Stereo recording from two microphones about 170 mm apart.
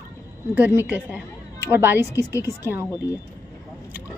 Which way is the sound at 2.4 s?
15° right (ahead or behind).